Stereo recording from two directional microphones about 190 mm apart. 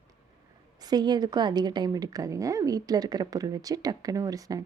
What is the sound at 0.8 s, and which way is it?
A woman's voice, 20° right (ahead or behind).